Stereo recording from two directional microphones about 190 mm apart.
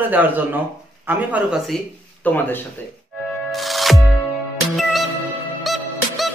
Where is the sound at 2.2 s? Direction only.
10° left (ahead or behind).